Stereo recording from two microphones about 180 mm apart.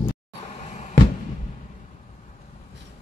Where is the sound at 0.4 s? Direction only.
35° left (ahead or behind).